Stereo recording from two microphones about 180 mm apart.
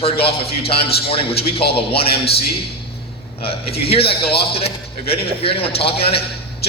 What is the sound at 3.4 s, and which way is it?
A man's voice, 30° left (ahead or behind).